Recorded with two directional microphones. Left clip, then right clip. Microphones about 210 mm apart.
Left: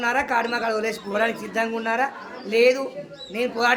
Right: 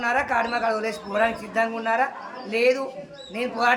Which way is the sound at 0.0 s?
25° left (ahead or behind).